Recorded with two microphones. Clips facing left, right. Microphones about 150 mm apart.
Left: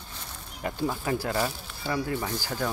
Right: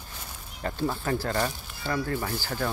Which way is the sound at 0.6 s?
10° left (ahead or behind).